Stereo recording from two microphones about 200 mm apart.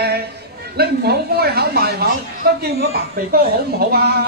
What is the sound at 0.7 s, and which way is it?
Speech, 55° right (ahead or behind).